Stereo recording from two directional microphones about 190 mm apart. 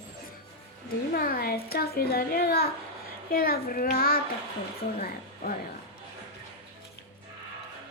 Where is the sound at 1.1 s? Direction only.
55° left (ahead or behind).